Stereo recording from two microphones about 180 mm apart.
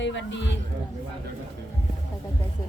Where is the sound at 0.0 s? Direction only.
85° left.